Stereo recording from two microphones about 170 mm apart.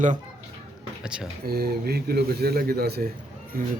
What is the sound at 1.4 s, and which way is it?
A man's voice, 65° right (ahead or behind).